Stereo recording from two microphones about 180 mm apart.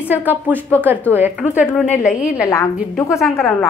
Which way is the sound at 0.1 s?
10° right (ahead or behind).